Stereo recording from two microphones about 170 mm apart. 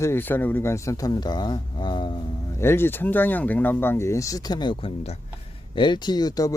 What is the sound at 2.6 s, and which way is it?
Speech, 15° left (ahead or behind).